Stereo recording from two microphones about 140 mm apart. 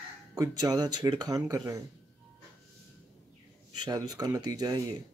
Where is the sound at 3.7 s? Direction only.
30° right (ahead or behind).